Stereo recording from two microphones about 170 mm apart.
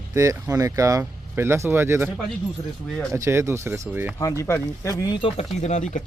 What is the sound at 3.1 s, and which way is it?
Speech, 15° right (ahead or behind).